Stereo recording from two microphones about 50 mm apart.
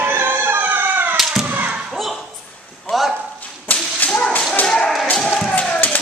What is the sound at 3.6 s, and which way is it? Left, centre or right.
Whip, left.